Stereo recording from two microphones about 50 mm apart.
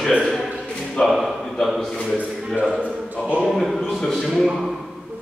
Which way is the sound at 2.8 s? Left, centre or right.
Right.